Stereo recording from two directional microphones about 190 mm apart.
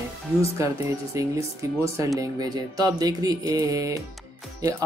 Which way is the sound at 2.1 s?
20° right (ahead or behind).